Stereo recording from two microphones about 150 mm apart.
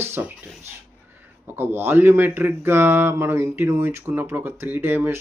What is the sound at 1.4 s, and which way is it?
Speech, 15° right (ahead or behind).